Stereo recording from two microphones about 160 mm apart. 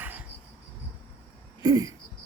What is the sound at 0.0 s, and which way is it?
Cricket, 10° right (ahead or behind).